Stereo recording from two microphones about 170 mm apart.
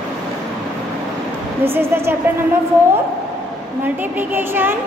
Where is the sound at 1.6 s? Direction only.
15° right (ahead or behind).